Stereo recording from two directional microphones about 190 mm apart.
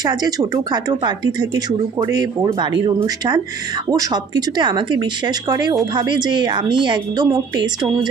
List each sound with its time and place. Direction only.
0.0 s speech: 20° right (ahead or behind)